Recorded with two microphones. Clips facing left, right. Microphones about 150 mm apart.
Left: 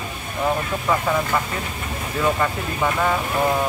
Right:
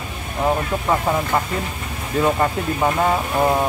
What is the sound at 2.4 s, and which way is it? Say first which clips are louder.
Speech: right 3 dB; 30° right (ahead or behind).